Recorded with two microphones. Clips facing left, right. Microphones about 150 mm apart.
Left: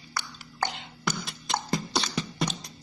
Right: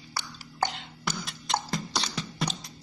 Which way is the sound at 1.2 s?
Centre (ahead or behind).